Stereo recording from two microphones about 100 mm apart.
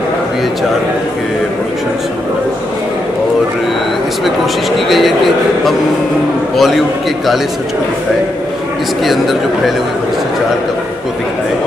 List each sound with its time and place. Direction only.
4.7 s a man's voice: centre (ahead or behind)
9.0 s speech: centre (ahead or behind)